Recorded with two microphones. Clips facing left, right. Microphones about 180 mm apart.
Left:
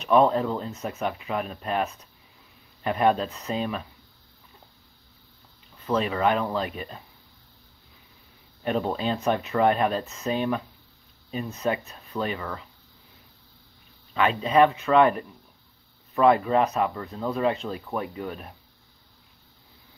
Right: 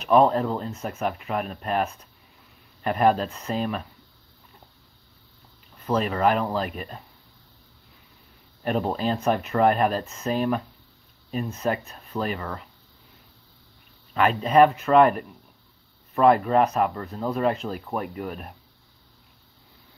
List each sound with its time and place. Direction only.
0.0 s speech: centre (ahead or behind)
5.9 s speech: centre (ahead or behind)
8.6 s speech: 5° right (ahead or behind)
14.1 s speech: 5° right (ahead or behind)
16.4 s speech: centre (ahead or behind)